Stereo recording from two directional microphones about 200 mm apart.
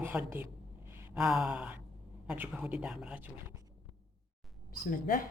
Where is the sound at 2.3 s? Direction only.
5° right (ahead or behind).